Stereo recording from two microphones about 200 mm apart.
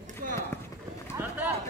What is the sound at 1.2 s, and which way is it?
Clip-clop, 10° right (ahead or behind).